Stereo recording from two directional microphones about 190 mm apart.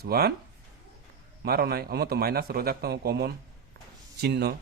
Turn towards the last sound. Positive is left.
turn(degrees=-60)  # may be behind; listen again after turning